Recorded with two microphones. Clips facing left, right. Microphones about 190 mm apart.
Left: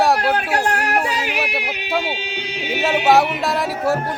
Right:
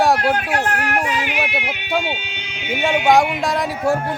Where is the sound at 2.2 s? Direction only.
35° left (ahead or behind).